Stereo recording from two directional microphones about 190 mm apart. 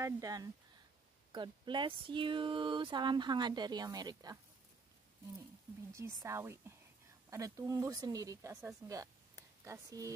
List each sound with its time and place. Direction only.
0.0 s speech: 20° right (ahead or behind)
5.9 s speech: 15° right (ahead or behind)